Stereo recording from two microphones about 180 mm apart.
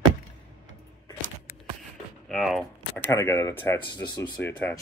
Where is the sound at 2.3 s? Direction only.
Centre (ahead or behind); by 4.3 s 25° left (ahead or behind).